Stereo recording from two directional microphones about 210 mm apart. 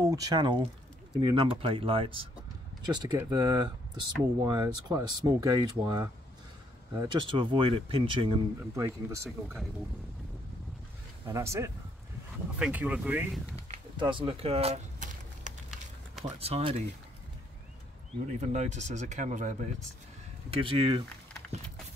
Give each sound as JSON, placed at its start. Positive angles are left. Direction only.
{"t": 0.0, "sound": "speech", "side_deg": -15}
{"t": 8.7, "sound": "speech", "side_deg": -15}
{"t": 11.3, "sound": "speech", "side_deg": -15}
{"t": 13.6, "sound": "a sound", "side_deg": -25}
{"t": 16.3, "sound": "speech", "side_deg": -30}
{"t": 18.2, "sound": "speech", "side_deg": -35}
{"t": 20.4, "sound": "speech", "side_deg": -25}